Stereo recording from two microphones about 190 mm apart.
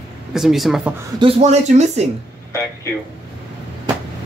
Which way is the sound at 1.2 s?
30° right (ahead or behind).